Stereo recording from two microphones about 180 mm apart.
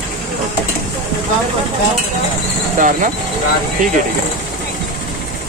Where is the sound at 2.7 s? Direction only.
45° right (ahead or behind).